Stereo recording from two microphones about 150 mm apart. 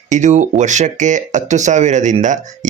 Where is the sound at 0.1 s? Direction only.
55° right (ahead or behind).